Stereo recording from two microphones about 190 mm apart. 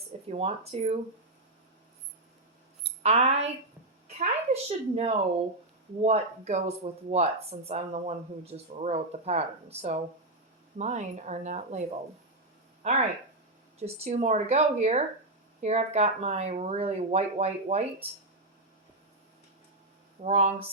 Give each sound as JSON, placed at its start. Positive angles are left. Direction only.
{"t": 0.3, "sound": "speech", "side_deg": -30}
{"t": 3.0, "sound": "speech", "side_deg": -35}
{"t": 20.2, "sound": "speech", "side_deg": -35}